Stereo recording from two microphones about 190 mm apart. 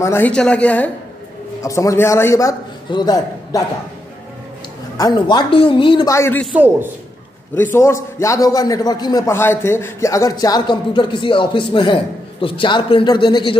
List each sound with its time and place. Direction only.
0.0 s a man's voice: 10° left (ahead or behind)
4.9 s a man's voice: 20° left (ahead or behind)
6.4 s a man's voice: 10° right (ahead or behind)
7.5 s a man's voice: 10° left (ahead or behind)